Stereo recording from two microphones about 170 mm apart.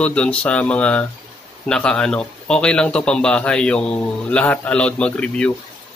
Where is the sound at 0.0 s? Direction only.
5° left (ahead or behind).